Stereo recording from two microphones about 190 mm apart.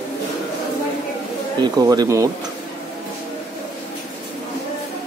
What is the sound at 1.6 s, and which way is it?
Speech, 20° right (ahead or behind).